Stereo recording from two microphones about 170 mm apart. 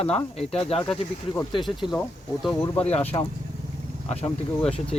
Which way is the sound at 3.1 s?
25° left (ahead or behind).